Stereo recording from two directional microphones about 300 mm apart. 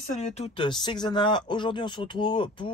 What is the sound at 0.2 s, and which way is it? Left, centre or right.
Speech, left.